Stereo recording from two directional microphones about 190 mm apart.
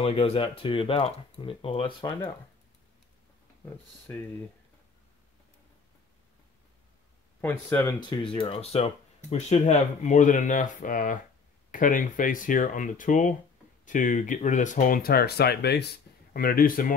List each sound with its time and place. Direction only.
0.0 s speech: 30° left (ahead or behind)
4.1 s speech: 15° left (ahead or behind)
7.4 s speech: 10° left (ahead or behind)
8.0 s speech: 25° left (ahead or behind); by 16.8 s 50° left (ahead or behind)